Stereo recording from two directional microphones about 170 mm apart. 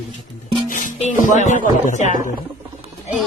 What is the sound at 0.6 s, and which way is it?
Music, 50° left (ahead or behind).